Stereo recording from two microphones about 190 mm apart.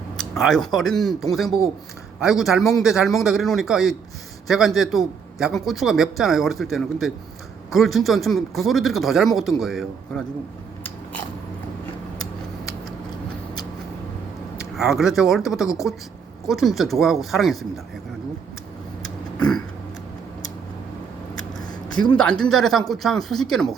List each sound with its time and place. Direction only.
0.2 s a man's voice: centre (ahead or behind)
14.8 s a man's voice: centre (ahead or behind)
19.4 s throat clearing: 5° left (ahead or behind)
22.1 s a man's voice: 5° left (ahead or behind)